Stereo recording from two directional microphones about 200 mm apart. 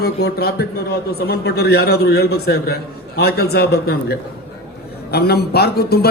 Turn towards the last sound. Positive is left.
turn(degrees=55)  # may be behind; listen again after turning